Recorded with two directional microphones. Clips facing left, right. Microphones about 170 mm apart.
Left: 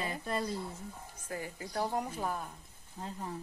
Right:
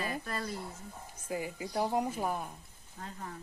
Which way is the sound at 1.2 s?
10° right (ahead or behind).